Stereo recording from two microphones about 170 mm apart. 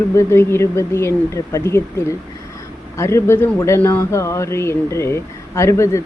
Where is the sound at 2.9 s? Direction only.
15° left (ahead or behind).